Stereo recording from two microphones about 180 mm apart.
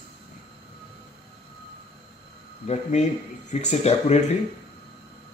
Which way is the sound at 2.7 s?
40° left (ahead or behind).